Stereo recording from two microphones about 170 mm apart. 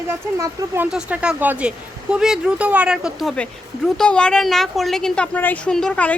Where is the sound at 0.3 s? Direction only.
15° right (ahead or behind).